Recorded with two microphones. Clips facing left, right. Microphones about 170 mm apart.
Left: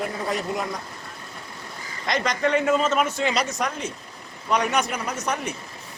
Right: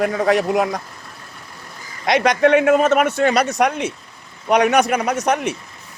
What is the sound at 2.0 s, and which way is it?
Speech, 70° right (ahead or behind).